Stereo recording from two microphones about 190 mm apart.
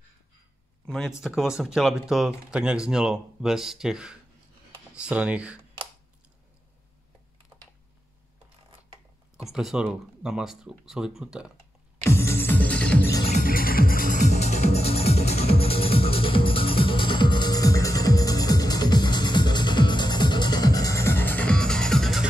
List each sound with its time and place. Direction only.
0.8 s speech: centre (ahead or behind)
9.4 s speech: centre (ahead or behind)
12.0 s music: 15° left (ahead or behind)
13.3 s music: 50° left (ahead or behind); by 22.2 s centre (ahead or behind)